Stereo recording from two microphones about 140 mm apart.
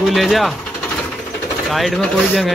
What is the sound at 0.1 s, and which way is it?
Speech, centre (ahead or behind).